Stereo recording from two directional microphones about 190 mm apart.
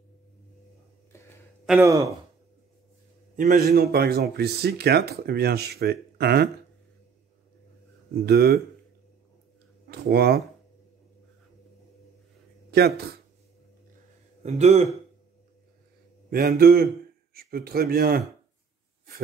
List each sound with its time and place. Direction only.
1.1 s a sound: 15° left (ahead or behind)
1.8 s speech: 15° right (ahead or behind)
3.3 s speech: 45° right (ahead or behind)
8.1 s speech: 55° right (ahead or behind)
9.8 s speech: 55° right (ahead or behind)
12.7 s speech: 55° right (ahead or behind)
14.4 s speech: 35° right (ahead or behind)
16.3 s a man's voice: 50° right (ahead or behind)